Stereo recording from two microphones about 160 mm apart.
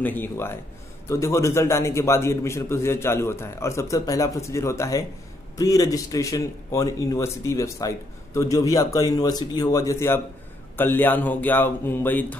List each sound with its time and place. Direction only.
0.0 s a man's voice: 10° left (ahead or behind)